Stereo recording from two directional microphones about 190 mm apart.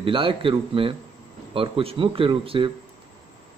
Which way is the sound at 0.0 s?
30° right (ahead or behind).